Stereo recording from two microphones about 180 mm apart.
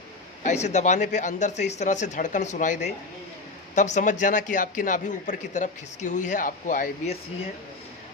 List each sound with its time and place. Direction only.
0.4 s speech: 40° left (ahead or behind)